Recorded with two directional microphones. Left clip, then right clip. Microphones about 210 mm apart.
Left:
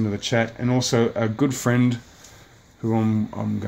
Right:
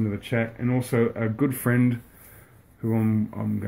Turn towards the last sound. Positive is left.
turn(degrees=10)  # may be behind; listen again after turning